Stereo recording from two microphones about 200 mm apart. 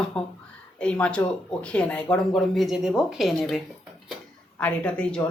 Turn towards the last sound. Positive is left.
turn(degrees=5)  # may be behind; listen again after turning